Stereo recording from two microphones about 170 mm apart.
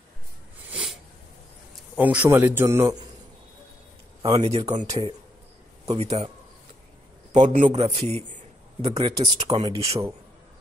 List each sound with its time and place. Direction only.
0.7 s a sound: 5° right (ahead or behind)
2.0 s a man's voice: 10° right (ahead or behind)
4.2 s speech: 25° right (ahead or behind)
4.5 s speech: 40° right (ahead or behind)
7.6 s speech: 40° right (ahead or behind)
8.8 s speech: 25° right (ahead or behind)